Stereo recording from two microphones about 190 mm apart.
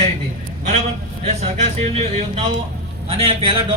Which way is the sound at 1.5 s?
35° right (ahead or behind).